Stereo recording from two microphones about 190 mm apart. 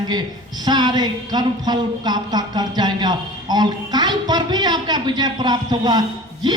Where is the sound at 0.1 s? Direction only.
20° right (ahead or behind).